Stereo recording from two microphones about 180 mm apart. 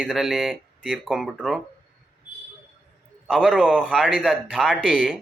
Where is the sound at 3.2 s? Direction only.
Centre (ahead or behind).